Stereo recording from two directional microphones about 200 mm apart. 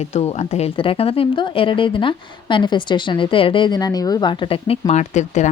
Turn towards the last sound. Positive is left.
turn(degrees=35)  # may be behind; listen again after turning